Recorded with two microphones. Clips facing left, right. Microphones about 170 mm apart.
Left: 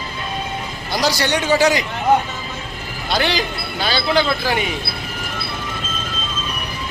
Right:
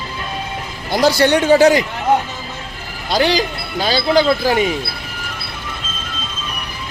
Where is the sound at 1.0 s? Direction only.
55° right (ahead or behind).